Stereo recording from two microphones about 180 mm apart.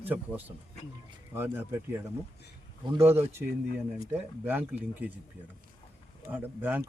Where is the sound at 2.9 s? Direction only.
15° right (ahead or behind).